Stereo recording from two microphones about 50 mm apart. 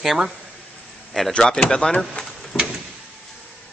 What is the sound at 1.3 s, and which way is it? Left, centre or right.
Speech, centre.